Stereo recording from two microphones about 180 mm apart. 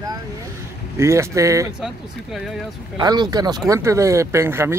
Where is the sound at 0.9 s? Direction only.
15° right (ahead or behind).